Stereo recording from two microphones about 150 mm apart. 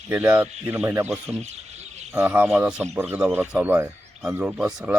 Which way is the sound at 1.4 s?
50° right (ahead or behind).